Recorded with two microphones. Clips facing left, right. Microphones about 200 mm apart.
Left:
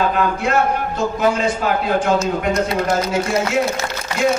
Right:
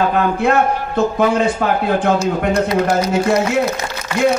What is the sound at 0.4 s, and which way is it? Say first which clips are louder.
A man's voice: right 3 dB; 55° right (ahead or behind).